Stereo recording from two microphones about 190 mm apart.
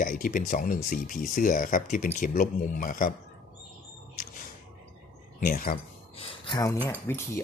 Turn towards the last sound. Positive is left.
turn(degrees=10)  # may be behind; listen again after turning